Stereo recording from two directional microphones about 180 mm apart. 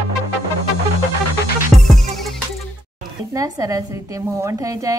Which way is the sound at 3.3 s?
20° right (ahead or behind).